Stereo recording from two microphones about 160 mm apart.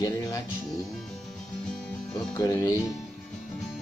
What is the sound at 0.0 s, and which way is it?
Speech, 20° left (ahead or behind).